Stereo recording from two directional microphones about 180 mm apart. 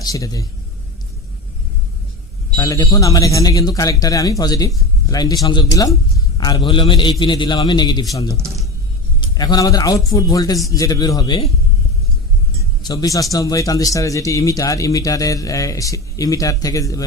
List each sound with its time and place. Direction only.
0.0 s speech: 20° left (ahead or behind)
2.6 s speech: 20° left (ahead or behind)
8.3 s speech: 15° right (ahead or behind)
9.2 s speech: 25° left (ahead or behind)
12.8 s speech: 20° left (ahead or behind)